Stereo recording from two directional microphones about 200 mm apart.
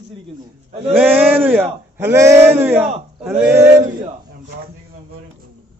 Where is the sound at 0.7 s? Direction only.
30° right (ahead or behind).